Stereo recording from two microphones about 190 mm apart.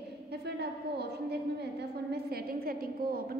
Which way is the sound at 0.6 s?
60° right (ahead or behind).